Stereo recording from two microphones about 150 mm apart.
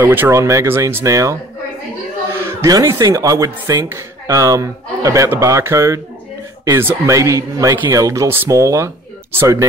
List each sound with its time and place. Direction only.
0.0 s speech: 15° right (ahead or behind)